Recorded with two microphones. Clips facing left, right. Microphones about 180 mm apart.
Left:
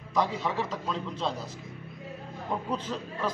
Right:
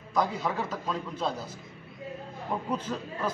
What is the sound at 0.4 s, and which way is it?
Speech, 5° right (ahead or behind).